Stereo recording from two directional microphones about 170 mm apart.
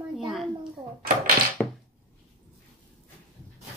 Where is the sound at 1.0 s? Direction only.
55° right (ahead or behind).